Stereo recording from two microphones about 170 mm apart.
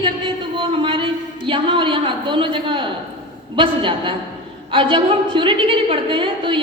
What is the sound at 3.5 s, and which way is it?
A woman's voice, 30° right (ahead or behind).